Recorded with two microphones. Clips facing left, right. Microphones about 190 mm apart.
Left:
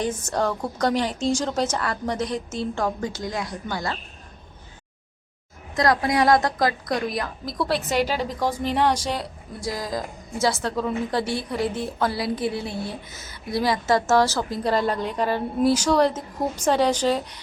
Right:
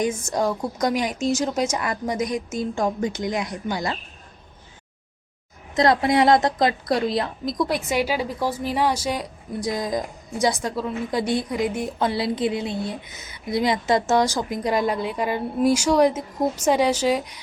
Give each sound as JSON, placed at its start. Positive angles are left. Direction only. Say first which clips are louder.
{"t": 0.3, "sound": "a woman's voice", "louder": "right 1 dB", "side_deg": -10}
{"t": 5.7, "sound": "a woman's voice", "louder": "right 3 dB", "side_deg": -25}
{"t": 7.6, "sound": "a woman's voice", "louder": "even", "side_deg": -10}